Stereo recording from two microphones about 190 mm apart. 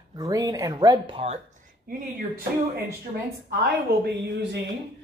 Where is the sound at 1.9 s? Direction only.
50° right (ahead or behind).